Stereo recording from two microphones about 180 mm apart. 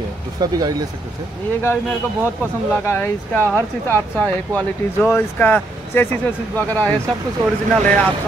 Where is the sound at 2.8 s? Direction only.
10° left (ahead or behind).